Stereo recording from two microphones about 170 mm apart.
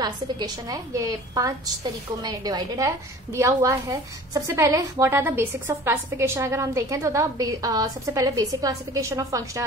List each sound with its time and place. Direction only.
0.0 s a woman's voice: 25° right (ahead or behind)